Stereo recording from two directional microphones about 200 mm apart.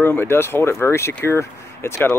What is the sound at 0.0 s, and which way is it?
Speech, 10° left (ahead or behind).